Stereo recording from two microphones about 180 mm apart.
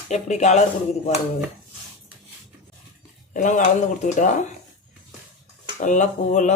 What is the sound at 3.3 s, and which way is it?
Speech, 45° left (ahead or behind).